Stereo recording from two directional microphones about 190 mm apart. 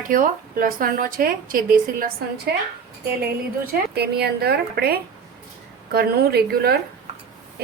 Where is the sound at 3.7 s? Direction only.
55° right (ahead or behind).